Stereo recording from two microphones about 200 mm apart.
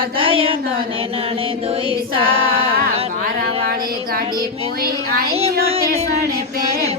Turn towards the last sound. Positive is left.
turn(degrees=-30)  # may be behind; listen again after turning